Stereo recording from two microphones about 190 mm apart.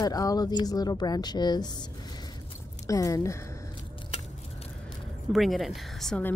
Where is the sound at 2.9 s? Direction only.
15° left (ahead or behind).